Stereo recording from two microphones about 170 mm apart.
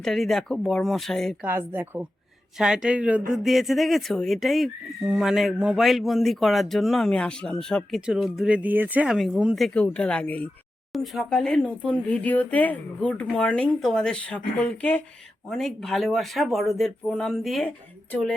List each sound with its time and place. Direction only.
0.0 s speech: centre (ahead or behind)
1.5 s speech: 15° right (ahead or behind); by 18.3 s 5° left (ahead or behind)